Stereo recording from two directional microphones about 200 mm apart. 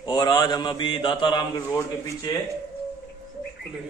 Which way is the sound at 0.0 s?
20° left (ahead or behind).